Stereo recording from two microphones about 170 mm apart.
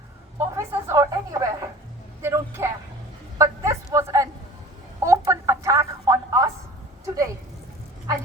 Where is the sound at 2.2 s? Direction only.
15° right (ahead or behind).